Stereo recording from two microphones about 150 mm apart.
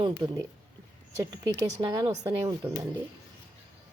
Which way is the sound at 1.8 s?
25° right (ahead or behind).